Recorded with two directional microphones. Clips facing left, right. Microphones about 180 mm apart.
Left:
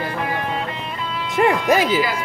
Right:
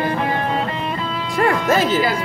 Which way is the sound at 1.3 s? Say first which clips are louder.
Left 1 dB; 20° left (ahead or behind).